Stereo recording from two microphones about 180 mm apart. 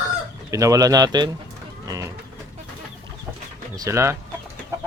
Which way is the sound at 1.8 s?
20° right (ahead or behind).